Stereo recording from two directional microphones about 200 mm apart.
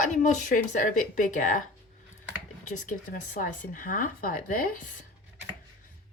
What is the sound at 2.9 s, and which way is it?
A woman's voice, 40° left (ahead or behind).